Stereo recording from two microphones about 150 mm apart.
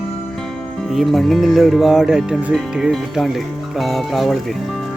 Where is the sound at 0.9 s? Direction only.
Centre (ahead or behind).